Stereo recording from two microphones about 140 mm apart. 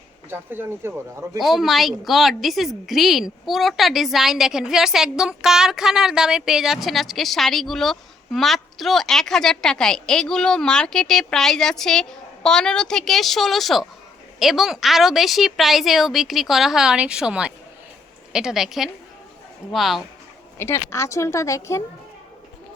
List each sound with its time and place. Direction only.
0.3 s speech: 15° right (ahead or behind)
1.4 s a woman's voice: centre (ahead or behind)
20.6 s speech: 15° left (ahead or behind)